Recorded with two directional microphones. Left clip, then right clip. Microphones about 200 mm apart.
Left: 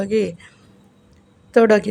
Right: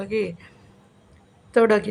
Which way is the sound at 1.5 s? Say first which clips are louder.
Left 4 dB; 10° left (ahead or behind).